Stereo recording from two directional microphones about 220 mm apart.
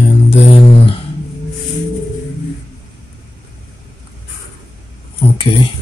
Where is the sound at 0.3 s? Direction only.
25° left (ahead or behind).